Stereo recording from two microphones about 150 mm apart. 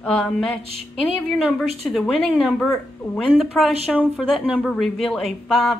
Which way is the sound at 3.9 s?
Centre (ahead or behind).